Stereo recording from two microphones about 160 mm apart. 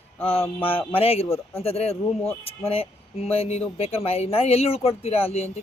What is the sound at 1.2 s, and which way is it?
Speech, 15° left (ahead or behind).